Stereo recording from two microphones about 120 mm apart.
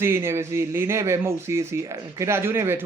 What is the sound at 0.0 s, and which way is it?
Speech, 20° right (ahead or behind).